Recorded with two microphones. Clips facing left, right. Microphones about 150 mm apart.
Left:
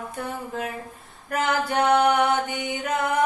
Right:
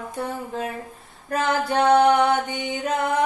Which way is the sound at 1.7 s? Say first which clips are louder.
Right 4 dB; 25° right (ahead or behind).